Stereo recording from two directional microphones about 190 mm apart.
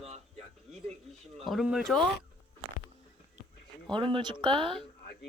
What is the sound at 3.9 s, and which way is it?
Speech, 25° right (ahead or behind).